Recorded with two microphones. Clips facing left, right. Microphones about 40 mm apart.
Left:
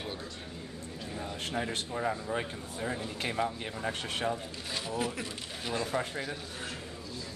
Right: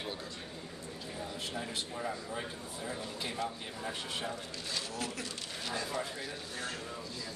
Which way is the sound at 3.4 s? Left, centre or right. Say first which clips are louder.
Left 6 dB; left.